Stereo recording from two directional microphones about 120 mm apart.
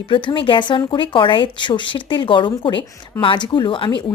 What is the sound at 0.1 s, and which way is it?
A woman's voice, 45° left (ahead or behind).